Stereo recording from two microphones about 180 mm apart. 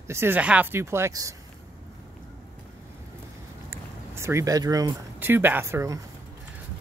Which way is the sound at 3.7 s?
15° right (ahead or behind).